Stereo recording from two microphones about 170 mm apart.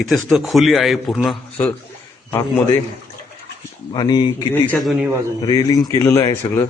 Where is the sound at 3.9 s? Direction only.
25° left (ahead or behind).